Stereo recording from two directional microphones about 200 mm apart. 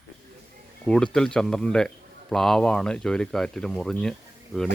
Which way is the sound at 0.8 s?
5° left (ahead or behind).